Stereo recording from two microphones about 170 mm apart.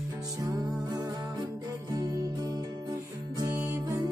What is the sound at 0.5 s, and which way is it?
Music, 20° right (ahead or behind).